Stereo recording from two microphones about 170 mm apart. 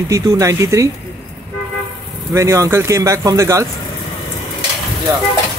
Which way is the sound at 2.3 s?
15° right (ahead or behind).